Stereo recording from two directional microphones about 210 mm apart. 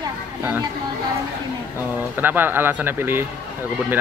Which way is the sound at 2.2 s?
10° right (ahead or behind).